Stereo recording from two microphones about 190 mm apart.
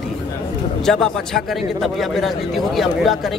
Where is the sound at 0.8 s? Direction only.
Centre (ahead or behind).